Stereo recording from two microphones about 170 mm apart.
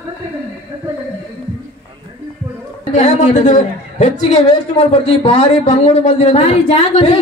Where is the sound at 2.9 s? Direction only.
45° left (ahead or behind).